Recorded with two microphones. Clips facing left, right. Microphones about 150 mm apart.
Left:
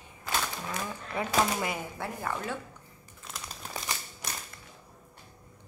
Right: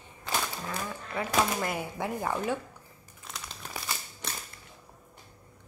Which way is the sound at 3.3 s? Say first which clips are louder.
Even; centre (ahead or behind).